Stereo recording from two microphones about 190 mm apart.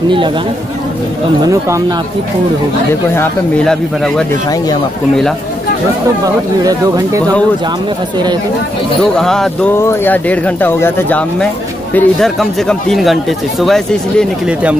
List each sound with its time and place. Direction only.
1.5 s speech: 15° right (ahead or behind)
3.2 s speech: 5° left (ahead or behind)
6.2 s speech: 20° right (ahead or behind)
9.1 s speech: 5° left (ahead or behind)